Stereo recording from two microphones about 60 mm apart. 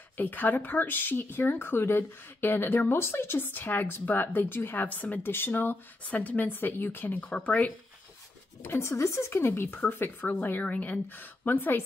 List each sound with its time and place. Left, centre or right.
0.2 s speech: left
7.2 s speech: left
8.6 s speech: left